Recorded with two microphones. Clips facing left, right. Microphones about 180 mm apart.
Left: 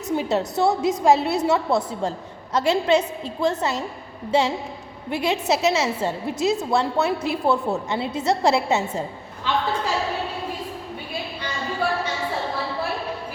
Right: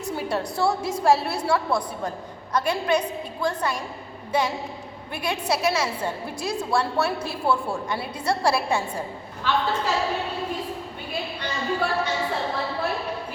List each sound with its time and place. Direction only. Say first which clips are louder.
0.2 s a woman's voice: left 3 dB; 20° left (ahead or behind)